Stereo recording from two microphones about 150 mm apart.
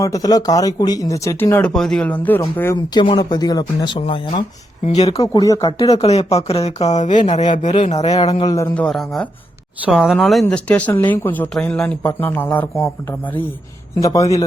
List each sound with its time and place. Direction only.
0.0 s speech: 25° left (ahead or behind)
1.7 s speech: 5° left (ahead or behind)
2.9 s speech: 30° left (ahead or behind)
5.3 s speech: 25° left (ahead or behind)
5.9 s speech: 45° left (ahead or behind)
8.2 s a man's voice: 30° left (ahead or behind)
8.7 s speech: 5° left (ahead or behind); by 14.4 s 20° left (ahead or behind)